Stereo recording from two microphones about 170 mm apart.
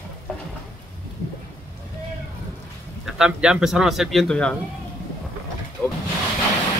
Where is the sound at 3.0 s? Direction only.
5° right (ahead or behind).